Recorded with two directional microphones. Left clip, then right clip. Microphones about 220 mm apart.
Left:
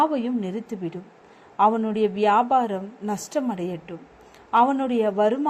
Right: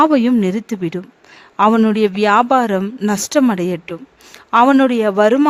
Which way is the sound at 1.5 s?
35° right (ahead or behind).